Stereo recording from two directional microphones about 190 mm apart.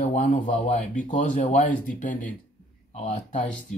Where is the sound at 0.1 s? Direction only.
40° left (ahead or behind).